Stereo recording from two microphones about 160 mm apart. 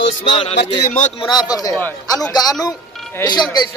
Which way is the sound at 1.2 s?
25° left (ahead or behind).